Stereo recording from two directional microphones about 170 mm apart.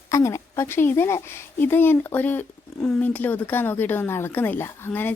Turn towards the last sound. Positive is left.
turn(degrees=10)  # may be behind; listen again after turning